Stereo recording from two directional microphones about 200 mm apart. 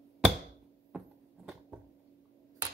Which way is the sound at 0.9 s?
5° right (ahead or behind).